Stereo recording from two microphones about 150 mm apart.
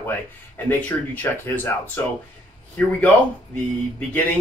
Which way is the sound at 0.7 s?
10° left (ahead or behind).